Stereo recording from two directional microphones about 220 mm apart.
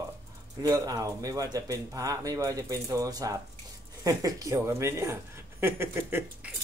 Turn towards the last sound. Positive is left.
turn(degrees=-10)  # may be behind; listen again after turning